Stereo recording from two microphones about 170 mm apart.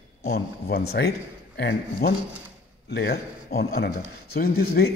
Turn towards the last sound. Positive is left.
turn(degrees=65)  # may be behind; listen again after turning